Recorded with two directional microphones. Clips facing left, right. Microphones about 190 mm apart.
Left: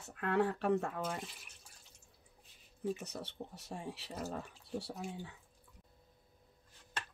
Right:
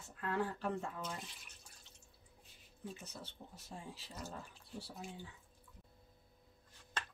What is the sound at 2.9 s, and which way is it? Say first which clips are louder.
Speech: left 7 dB; 70° left (ahead or behind).